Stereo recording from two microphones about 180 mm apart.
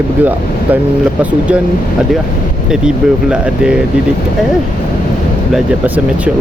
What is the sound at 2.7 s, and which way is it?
Speech, 5° right (ahead or behind).